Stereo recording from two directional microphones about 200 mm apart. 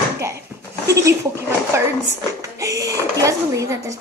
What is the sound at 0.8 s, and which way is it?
Speech, 15° right (ahead or behind).